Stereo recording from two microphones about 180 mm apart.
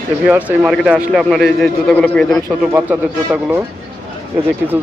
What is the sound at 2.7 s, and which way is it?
Speech, 10° right (ahead or behind).